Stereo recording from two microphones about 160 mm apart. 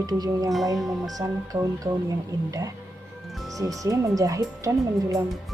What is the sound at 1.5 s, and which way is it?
Speech, 25° right (ahead or behind).